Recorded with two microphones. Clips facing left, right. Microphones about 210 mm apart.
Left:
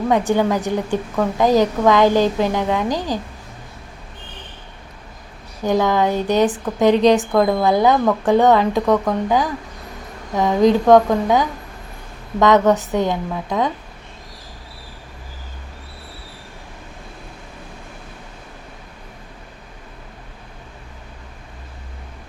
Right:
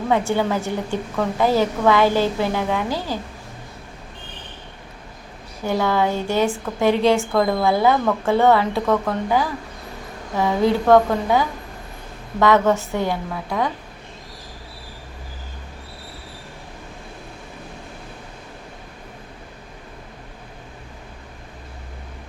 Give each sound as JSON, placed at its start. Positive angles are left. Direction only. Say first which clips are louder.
{"t": 0.1, "sound": "a woman's voice", "louder": "left 2 dB", "side_deg": 15}
{"t": 5.6, "sound": "a woman's voice", "louder": "left 3 dB", "side_deg": 15}